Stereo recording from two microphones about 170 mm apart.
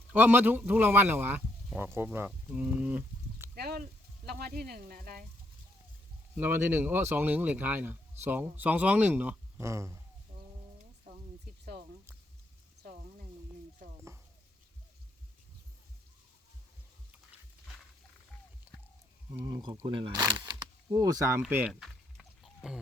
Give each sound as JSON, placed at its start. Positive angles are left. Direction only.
{"t": 0.1, "sound": "speech", "side_deg": -10}
{"t": 3.5, "sound": "speech", "side_deg": -65}
{"t": 6.3, "sound": "speech", "side_deg": -10}
{"t": 19.5, "sound": "speech", "side_deg": -20}
{"t": 21.5, "sound": "chicken", "side_deg": -5}